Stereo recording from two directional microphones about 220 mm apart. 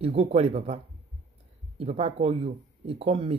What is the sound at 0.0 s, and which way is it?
Speech, 25° right (ahead or behind).